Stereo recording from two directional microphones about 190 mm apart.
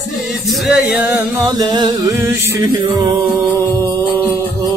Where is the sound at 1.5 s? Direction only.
20° right (ahead or behind).